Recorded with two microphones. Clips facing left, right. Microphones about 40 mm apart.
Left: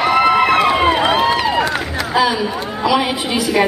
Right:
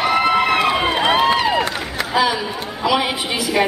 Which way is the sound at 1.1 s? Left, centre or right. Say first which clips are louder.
Left 1 dB; centre.